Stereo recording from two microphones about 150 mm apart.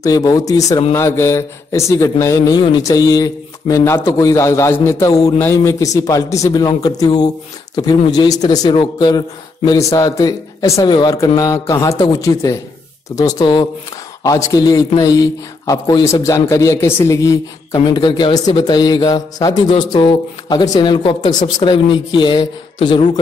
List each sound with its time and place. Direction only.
0.0 s a man's voice: 25° left (ahead or behind)